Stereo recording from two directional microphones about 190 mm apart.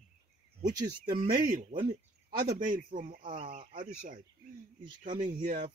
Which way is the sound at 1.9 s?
55° right (ahead or behind).